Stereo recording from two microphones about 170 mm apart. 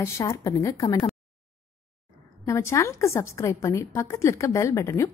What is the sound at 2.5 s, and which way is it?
Speech, 15° left (ahead or behind).